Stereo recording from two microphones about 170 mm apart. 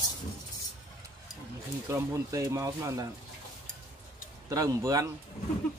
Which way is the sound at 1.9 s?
20° right (ahead or behind).